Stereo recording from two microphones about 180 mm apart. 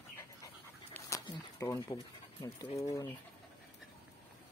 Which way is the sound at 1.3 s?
20° left (ahead or behind).